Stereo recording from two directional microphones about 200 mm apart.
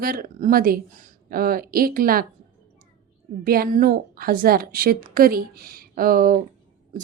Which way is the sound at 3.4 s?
45° right (ahead or behind).